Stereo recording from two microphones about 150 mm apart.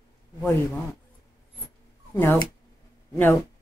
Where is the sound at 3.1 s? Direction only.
15° left (ahead or behind).